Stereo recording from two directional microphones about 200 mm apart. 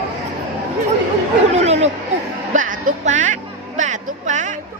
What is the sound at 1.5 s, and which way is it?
Laughter, 35° right (ahead or behind).